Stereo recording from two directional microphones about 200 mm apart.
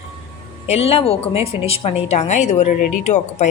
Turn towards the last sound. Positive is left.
turn(degrees=35)  # may be behind; listen again after turning